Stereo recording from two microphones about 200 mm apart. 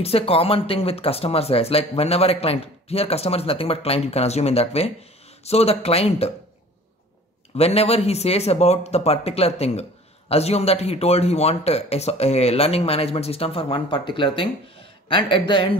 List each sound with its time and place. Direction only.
0.0 s speech: 30° left (ahead or behind)
7.5 s speech: 30° left (ahead or behind)